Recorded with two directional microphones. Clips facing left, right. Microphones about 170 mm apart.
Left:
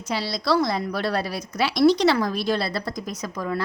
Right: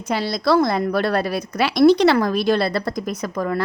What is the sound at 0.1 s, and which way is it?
A woman's voice, 55° right (ahead or behind).